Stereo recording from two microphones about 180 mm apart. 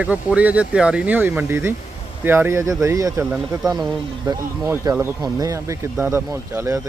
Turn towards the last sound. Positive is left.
turn(degrees=-15)  # may be behind; listen again after turning